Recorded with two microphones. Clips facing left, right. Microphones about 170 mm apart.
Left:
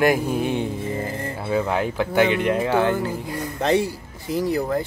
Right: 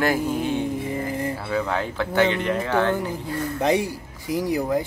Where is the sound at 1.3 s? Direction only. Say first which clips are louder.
Left 3 dB; 20° left (ahead or behind).